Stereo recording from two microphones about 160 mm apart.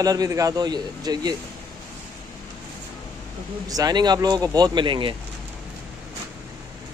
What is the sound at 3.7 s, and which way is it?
Speech, 25° right (ahead or behind).